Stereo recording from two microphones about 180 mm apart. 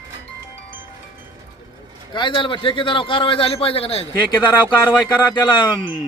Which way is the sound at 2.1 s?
25° left (ahead or behind).